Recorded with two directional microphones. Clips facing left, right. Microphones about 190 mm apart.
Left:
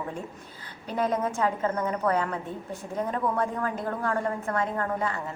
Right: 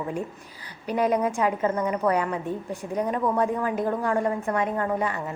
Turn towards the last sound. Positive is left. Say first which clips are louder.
# right 3 dB
turn(degrees=-15)  # may be behind; listen again after turning